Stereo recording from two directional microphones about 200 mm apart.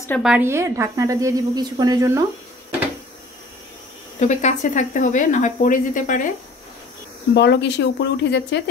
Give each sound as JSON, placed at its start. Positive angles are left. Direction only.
{"t": 0.2, "sound": "speech", "side_deg": -5}
{"t": 4.2, "sound": "speech", "side_deg": 35}
{"t": 7.3, "sound": "speech", "side_deg": 60}